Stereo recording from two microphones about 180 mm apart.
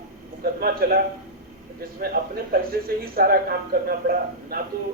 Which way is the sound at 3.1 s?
60° right (ahead or behind).